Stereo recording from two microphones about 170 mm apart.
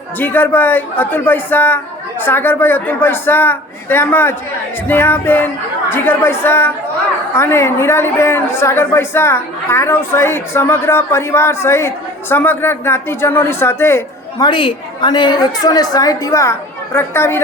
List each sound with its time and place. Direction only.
0.2 s a woman's voice: 10° left (ahead or behind)
14.4 s a woman's voice: 30° left (ahead or behind)